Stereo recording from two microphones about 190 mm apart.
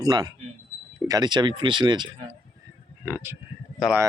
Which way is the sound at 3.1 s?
10° right (ahead or behind).